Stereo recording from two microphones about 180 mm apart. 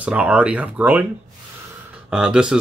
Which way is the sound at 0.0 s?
5° right (ahead or behind).